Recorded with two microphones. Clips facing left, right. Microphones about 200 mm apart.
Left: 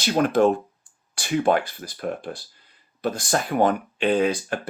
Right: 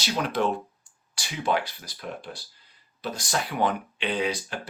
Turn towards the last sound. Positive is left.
turn(degrees=50)  # may be behind; listen again after turning